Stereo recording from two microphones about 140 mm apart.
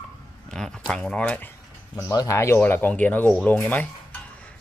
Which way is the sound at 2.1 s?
25° left (ahead or behind).